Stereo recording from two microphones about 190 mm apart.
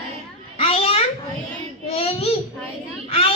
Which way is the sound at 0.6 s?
30° left (ahead or behind).